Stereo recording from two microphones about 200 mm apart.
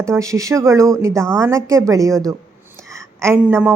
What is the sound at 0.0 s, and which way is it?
A woman's voice, 15° right (ahead or behind).